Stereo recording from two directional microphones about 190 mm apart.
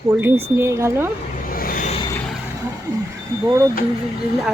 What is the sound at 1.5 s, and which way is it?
Vehicle, 50° left (ahead or behind).